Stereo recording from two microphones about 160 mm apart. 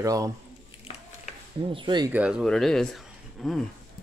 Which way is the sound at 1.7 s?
30° right (ahead or behind).